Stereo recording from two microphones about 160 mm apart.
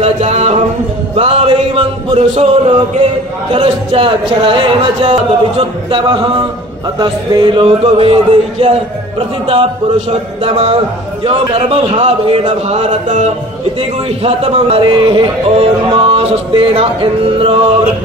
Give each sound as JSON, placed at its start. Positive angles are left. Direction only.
{"t": 0.0, "sound": "music", "side_deg": -45}
{"t": 1.1, "sound": "a sound", "side_deg": -35}
{"t": 2.1, "sound": "a man's voice", "side_deg": -40}